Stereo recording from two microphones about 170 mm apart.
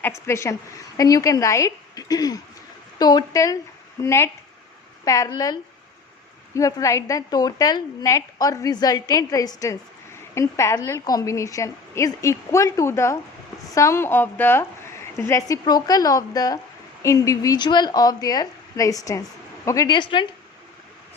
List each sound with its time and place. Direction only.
0.0 s a woman's voice: 15° left (ahead or behind)